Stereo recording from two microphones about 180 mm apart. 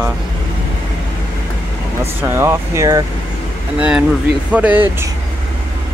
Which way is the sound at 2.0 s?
15° right (ahead or behind).